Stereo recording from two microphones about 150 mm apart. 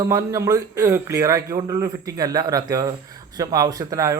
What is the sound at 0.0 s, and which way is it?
A man's voice, 20° right (ahead or behind).